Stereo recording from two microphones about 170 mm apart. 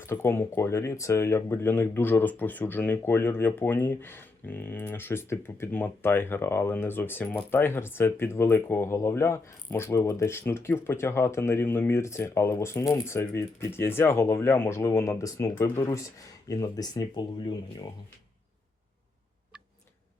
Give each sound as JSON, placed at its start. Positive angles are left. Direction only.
{"t": 0.0, "sound": "speech", "side_deg": 15}